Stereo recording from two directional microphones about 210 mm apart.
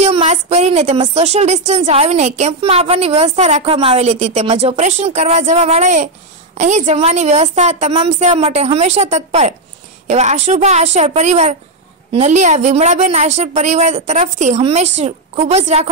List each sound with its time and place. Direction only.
0.0 s a woman's voice: 30° right (ahead or behind)